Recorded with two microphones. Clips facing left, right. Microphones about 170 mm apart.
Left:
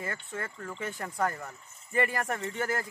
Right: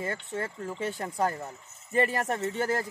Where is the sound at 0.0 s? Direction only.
30° right (ahead or behind).